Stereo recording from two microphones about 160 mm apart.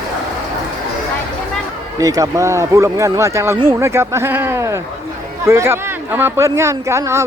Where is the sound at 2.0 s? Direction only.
20° right (ahead or behind).